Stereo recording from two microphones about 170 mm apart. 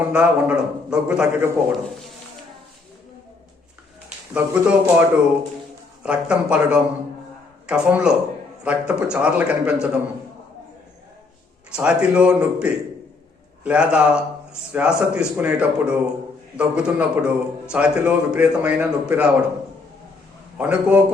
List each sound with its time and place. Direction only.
0.1 s a man's voice: 5° right (ahead or behind)
4.4 s a man's voice: 10° right (ahead or behind)
11.8 s a man's voice: 5° right (ahead or behind)
20.6 s a man's voice: 10° right (ahead or behind)